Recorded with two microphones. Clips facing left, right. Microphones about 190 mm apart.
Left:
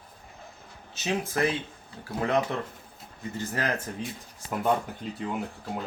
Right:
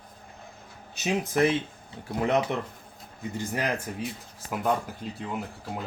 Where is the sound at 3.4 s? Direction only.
15° right (ahead or behind).